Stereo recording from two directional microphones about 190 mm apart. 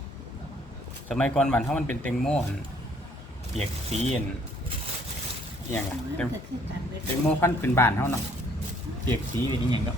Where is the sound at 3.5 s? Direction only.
35° right (ahead or behind).